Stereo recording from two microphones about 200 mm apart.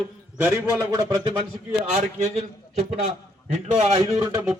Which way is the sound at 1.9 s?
35° right (ahead or behind).